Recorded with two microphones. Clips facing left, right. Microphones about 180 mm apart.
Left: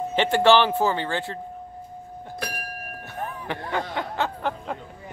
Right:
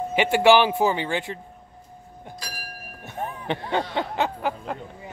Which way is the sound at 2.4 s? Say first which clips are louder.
Left 9 dB; 60° left (ahead or behind).